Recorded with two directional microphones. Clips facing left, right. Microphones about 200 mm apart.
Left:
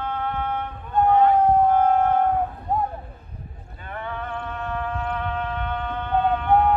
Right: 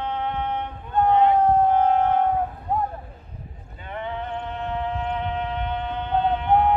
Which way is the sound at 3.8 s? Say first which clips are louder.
Right 2 dB; 20° right (ahead or behind).